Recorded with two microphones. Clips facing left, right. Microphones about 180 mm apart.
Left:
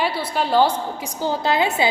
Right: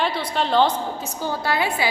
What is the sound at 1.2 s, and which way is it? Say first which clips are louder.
Speech: left 4 dB; 20° left (ahead or behind).